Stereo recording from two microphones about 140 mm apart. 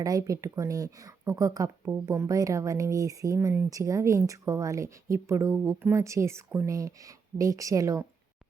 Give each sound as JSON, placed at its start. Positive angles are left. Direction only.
{"t": 0.0, "sound": "speech", "side_deg": -25}